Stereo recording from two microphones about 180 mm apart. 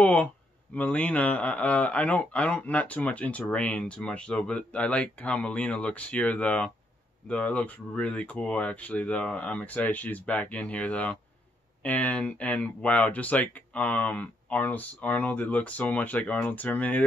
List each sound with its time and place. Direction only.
0.0 s a man's voice: 10° left (ahead or behind)